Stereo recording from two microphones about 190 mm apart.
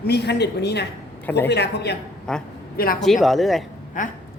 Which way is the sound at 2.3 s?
5° left (ahead or behind).